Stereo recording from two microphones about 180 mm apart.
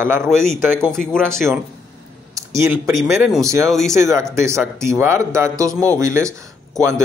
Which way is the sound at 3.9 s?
15° right (ahead or behind).